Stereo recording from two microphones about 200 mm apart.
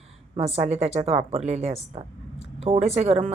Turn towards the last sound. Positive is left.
turn(degrees=-30)  # may be behind; listen again after turning